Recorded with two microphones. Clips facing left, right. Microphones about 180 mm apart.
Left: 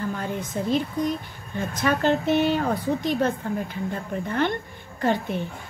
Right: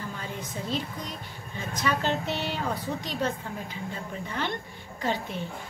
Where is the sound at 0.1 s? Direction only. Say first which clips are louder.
Left 7 dB; 55° left (ahead or behind).